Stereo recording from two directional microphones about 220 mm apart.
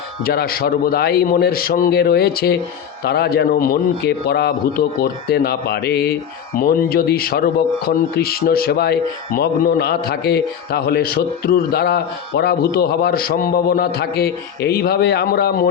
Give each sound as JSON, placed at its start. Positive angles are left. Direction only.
{"t": 0.3, "sound": "a man's voice", "side_deg": 45}